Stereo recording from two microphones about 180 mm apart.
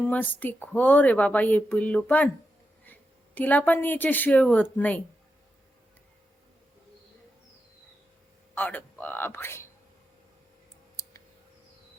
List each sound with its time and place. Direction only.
0.1 s a woman's voice: 10° left (ahead or behind)
8.5 s speech: 10° left (ahead or behind)
11.0 s clicking: 15° left (ahead or behind)